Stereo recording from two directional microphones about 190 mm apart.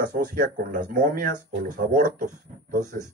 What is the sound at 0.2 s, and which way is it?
Speech, 50° right (ahead or behind).